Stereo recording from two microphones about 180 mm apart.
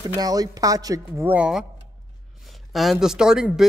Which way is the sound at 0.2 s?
20° right (ahead or behind).